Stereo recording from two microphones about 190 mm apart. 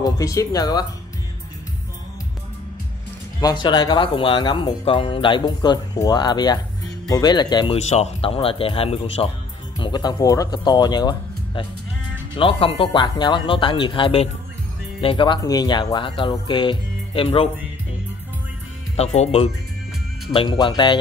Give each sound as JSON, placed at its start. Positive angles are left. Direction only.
{"t": 0.0, "sound": "speech", "side_deg": 15}
{"t": 3.3, "sound": "speech", "side_deg": 20}
{"t": 18.9, "sound": "speech", "side_deg": 35}
{"t": 20.3, "sound": "speech", "side_deg": 25}